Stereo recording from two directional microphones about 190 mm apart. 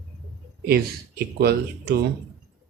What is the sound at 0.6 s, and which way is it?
Speech, 55° right (ahead or behind).